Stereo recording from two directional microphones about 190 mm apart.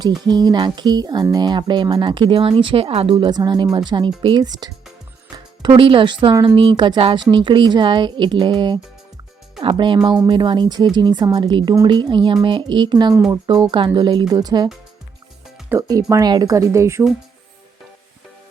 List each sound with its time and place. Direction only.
0.3 s speech: 20° right (ahead or behind)
15.9 s speech: 15° right (ahead or behind)